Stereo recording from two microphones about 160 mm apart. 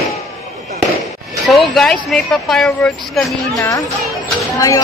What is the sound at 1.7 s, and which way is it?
Speech, 5° left (ahead or behind).